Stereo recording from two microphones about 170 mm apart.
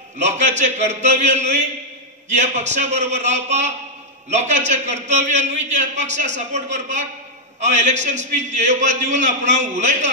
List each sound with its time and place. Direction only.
0.2 s a man's voice: 40° right (ahead or behind)